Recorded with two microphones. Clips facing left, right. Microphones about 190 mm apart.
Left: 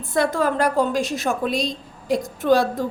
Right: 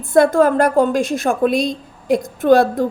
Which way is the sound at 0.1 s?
50° right (ahead or behind).